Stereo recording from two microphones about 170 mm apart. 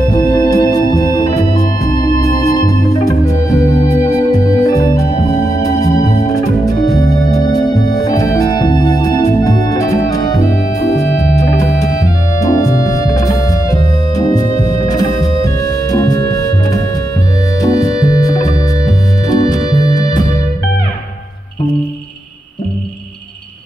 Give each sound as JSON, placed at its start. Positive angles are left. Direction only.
{"t": 0.1, "sound": "organ", "side_deg": 20}
{"t": 14.1, "sound": "music", "side_deg": 20}
{"t": 17.6, "sound": "music", "side_deg": 20}
{"t": 19.2, "sound": "organ", "side_deg": 20}